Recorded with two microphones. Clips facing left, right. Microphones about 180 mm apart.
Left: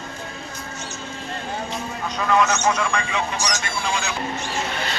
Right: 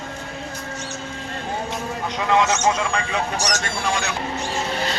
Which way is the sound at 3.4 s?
70° right (ahead or behind).